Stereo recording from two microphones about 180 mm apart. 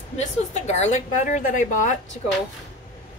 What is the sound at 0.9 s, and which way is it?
A woman's voice, 45° left (ahead or behind).